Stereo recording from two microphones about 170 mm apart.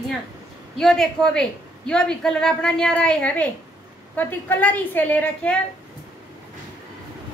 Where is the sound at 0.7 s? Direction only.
5° left (ahead or behind).